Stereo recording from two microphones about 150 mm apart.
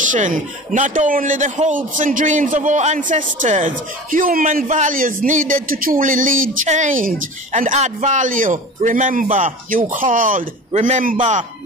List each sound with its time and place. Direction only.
0.0 s a man's voice: 60° right (ahead or behind)